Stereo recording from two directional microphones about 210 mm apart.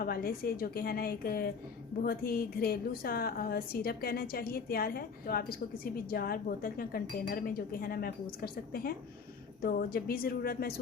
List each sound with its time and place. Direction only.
0.0 s a woman's voice: 45° left (ahead or behind)